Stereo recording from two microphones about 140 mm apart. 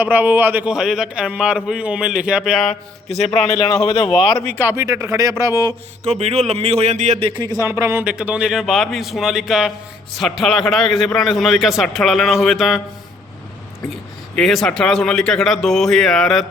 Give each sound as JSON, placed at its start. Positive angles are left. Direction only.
{"t": 0.0, "sound": "a man's voice", "side_deg": -10}
{"t": 3.5, "sound": "a man's voice", "side_deg": 25}
{"t": 3.8, "sound": "a man's voice", "side_deg": 0}
{"t": 4.4, "sound": "speech", "side_deg": 15}
{"t": 4.6, "sound": "speech", "side_deg": -20}
{"t": 6.1, "sound": "speech", "side_deg": -50}
{"t": 7.2, "sound": "speech", "side_deg": -35}
{"t": 7.7, "sound": "a man's voice", "side_deg": -15}
{"t": 14.3, "sound": "a man's voice", "side_deg": 5}